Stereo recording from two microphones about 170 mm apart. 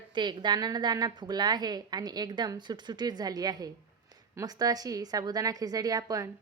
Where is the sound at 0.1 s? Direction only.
25° right (ahead or behind).